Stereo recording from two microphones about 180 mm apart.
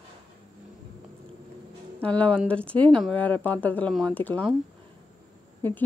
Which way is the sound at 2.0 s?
5° left (ahead or behind).